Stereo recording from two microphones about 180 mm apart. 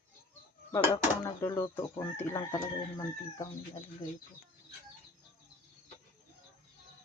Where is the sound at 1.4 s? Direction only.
15° left (ahead or behind).